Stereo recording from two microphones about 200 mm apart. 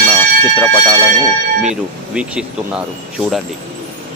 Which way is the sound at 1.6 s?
5° right (ahead or behind).